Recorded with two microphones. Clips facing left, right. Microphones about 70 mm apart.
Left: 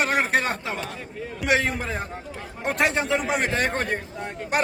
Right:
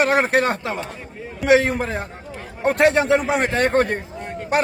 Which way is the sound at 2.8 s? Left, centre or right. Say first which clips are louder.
Right 7 dB; right.